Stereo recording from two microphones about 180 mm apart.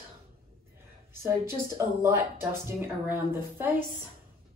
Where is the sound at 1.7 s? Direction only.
15° right (ahead or behind).